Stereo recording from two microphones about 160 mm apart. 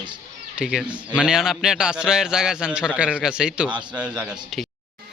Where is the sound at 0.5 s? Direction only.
5° right (ahead or behind).